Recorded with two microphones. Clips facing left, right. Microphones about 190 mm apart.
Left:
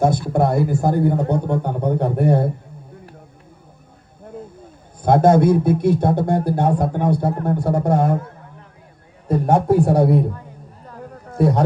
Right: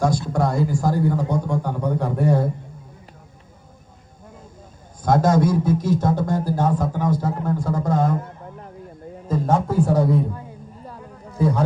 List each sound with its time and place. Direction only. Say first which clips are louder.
0.0 s a man's voice: left 3 dB; 60° left (ahead or behind)
5.0 s a man's voice: left 4 dB; 60° left (ahead or behind)
9.2 s a man's voice: left 4 dB; 65° left (ahead or behind)
11.3 s speech: left 3 dB; 65° left (ahead or behind)